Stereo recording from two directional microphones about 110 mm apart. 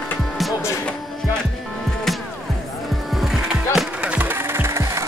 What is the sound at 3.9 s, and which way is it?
Music, 10° right (ahead or behind).